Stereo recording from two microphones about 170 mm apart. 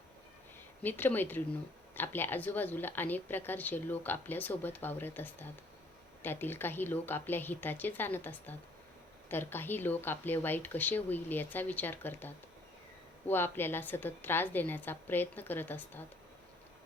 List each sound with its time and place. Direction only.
0.8 s a woman's voice: 10° left (ahead or behind)